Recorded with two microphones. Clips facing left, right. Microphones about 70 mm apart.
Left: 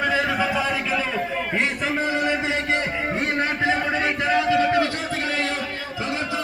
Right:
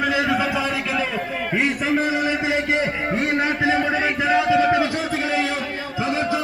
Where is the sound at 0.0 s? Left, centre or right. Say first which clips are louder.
Right 1 dB; centre.